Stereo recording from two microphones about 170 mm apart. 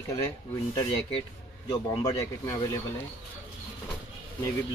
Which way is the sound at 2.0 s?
20° left (ahead or behind).